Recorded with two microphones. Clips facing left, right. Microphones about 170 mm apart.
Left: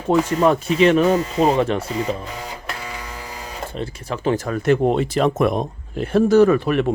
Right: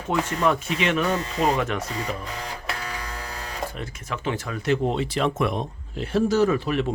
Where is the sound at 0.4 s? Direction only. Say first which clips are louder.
Left 8 dB; 40° left (ahead or behind).